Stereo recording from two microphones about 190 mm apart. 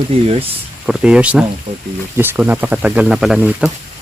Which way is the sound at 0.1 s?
30° right (ahead or behind).